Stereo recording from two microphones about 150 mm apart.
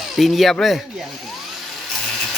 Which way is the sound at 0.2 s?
Centre (ahead or behind).